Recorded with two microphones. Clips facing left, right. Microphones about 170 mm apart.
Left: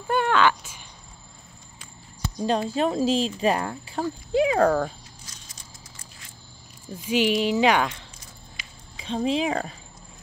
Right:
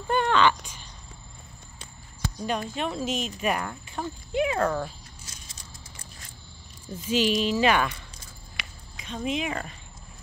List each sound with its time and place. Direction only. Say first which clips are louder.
0.0 s a sound: left 1 dB; 5° left (ahead or behind)
2.4 s speech: left 7 dB; 30° left (ahead or behind)
4.6 s speech: left 6 dB; 50° left (ahead or behind)
7.1 s speech: left 2 dB; 15° left (ahead or behind)
8.6 s a sound: right 6 dB; 70° right (ahead or behind)
8.9 s a woman's voice: left 5 dB; 30° left (ahead or behind)